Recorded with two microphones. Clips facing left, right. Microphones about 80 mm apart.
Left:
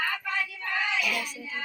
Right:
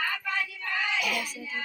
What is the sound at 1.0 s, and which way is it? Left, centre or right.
Speech, centre.